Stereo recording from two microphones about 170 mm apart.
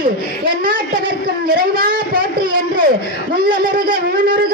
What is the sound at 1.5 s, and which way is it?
Speech, 60° right (ahead or behind).